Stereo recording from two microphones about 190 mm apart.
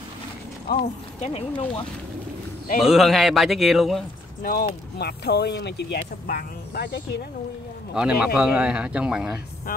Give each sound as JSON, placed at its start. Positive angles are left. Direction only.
{"t": 0.7, "sound": "speech", "side_deg": 30}
{"t": 2.8, "sound": "speech", "side_deg": 0}
{"t": 4.4, "sound": "speech", "side_deg": 50}
{"t": 7.9, "sound": "speech", "side_deg": -5}
{"t": 9.7, "sound": "speech", "side_deg": 50}